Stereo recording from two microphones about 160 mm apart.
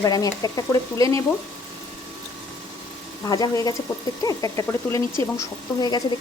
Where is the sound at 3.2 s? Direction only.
25° left (ahead or behind).